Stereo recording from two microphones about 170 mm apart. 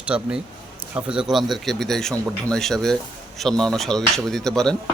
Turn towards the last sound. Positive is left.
turn(degrees=5)  # may be behind; listen again after turning